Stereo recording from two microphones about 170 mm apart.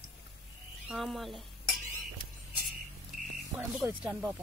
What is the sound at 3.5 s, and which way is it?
Speech, 5° right (ahead or behind).